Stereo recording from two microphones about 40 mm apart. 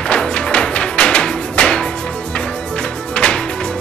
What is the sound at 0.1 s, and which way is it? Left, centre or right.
Music, left.